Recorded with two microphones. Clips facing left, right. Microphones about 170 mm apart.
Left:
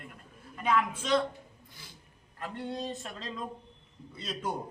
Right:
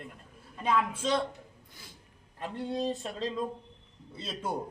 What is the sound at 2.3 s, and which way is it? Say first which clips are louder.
Speech: right 3 dB; 25° right (ahead or behind).